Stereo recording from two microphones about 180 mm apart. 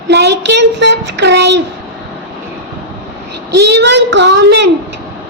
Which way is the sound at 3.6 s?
70° right (ahead or behind).